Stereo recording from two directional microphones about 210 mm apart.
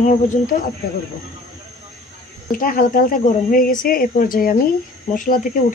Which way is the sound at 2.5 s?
40° left (ahead or behind).